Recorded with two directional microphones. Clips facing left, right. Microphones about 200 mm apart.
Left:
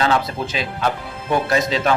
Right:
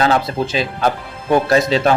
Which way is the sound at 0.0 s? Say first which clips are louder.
Right 3 dB; 35° right (ahead or behind).